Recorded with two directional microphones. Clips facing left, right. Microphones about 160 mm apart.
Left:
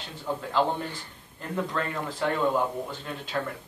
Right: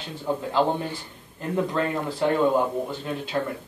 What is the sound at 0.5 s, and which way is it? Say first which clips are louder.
Speech: right 2 dB; 15° right (ahead or behind).